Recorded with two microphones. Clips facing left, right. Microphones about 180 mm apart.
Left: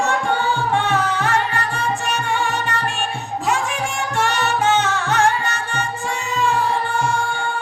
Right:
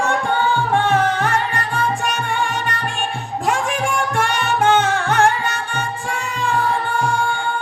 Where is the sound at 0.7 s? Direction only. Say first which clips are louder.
Right 4 dB; 50° right (ahead or behind).